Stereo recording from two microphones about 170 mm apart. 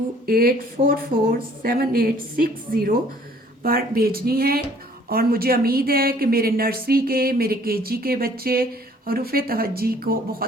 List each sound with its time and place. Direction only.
0.3 s a woman's voice: 60° right (ahead or behind)